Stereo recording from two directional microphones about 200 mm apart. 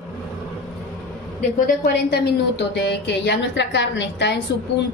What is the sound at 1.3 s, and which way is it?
A woman's voice, 40° left (ahead or behind).